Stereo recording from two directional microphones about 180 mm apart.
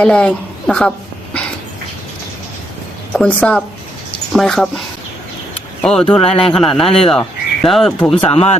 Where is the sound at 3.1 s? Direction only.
5° left (ahead or behind).